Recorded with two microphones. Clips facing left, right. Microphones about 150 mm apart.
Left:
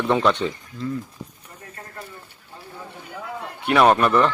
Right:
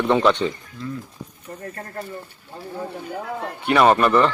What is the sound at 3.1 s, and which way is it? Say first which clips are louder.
Speech: right 2 dB; 50° right (ahead or behind).